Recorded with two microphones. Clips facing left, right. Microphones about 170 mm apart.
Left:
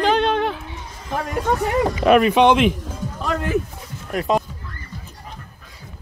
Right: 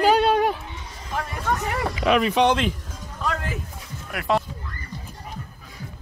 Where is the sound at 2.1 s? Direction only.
60° left (ahead or behind).